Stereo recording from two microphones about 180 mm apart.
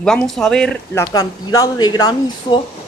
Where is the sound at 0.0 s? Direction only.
5° left (ahead or behind).